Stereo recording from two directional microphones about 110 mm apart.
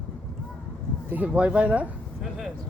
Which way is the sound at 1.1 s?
15° right (ahead or behind).